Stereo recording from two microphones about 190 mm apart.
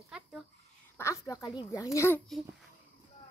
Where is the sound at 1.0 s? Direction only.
15° left (ahead or behind).